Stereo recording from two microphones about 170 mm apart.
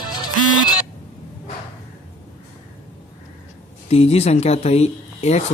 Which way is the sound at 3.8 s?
35° left (ahead or behind).